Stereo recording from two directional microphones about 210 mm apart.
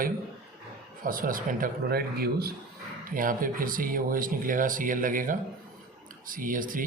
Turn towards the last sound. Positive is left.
turn(degrees=-40)  # may be behind; listen again after turning